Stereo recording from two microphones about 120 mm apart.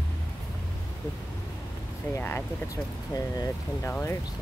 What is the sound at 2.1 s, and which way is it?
Speech, 20° left (ahead or behind).